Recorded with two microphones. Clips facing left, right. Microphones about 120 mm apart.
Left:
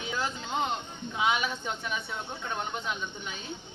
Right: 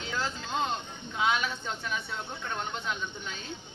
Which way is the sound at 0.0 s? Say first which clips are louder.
Left 1 dB; 15° left (ahead or behind).